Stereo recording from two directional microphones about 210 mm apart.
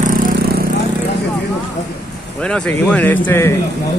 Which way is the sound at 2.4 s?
5° left (ahead or behind).